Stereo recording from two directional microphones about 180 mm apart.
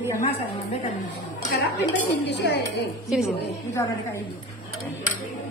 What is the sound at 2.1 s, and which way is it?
Speech, 70° left (ahead or behind).